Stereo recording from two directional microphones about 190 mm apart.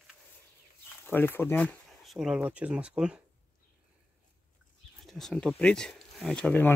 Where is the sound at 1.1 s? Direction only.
10° left (ahead or behind); by 3.2 s 5° right (ahead or behind).